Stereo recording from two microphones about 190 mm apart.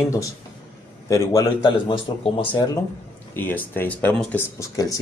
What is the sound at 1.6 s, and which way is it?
Speech, 25° left (ahead or behind).